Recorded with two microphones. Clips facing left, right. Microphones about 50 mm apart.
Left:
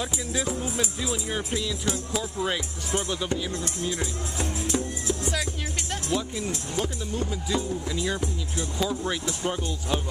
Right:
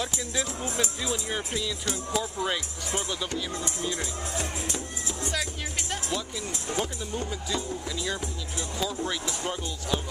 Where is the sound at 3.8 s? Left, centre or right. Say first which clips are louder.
Left 2 dB; centre.